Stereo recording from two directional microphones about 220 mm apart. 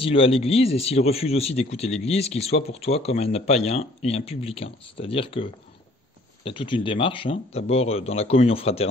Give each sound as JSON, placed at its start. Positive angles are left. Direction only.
{"t": 0.0, "sound": "speech", "side_deg": 25}